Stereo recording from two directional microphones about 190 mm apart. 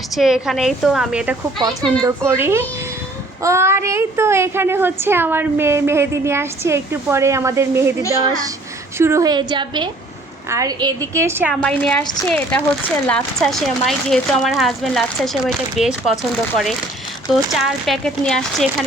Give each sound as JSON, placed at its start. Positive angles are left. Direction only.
{"t": 0.2, "sound": "a child's voice", "side_deg": 0}
{"t": 11.6, "sound": "speech", "side_deg": 5}
{"t": 17.5, "sound": "speech", "side_deg": 0}